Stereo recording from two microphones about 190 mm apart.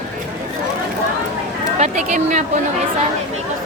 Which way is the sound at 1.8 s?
35° right (ahead or behind).